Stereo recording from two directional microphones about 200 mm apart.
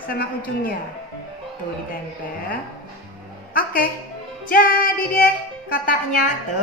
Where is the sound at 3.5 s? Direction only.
45° left (ahead or behind).